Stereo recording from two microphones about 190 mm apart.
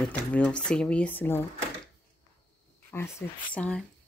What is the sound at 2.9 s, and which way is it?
Speech, 15° left (ahead or behind).